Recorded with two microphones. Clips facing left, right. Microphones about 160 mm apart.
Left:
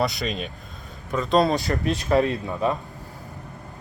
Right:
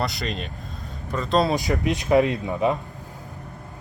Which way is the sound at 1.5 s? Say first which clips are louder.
Right 1 dB; 15° right (ahead or behind).